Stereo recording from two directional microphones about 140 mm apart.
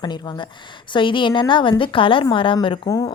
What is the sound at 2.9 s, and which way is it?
Speech, 25° left (ahead or behind).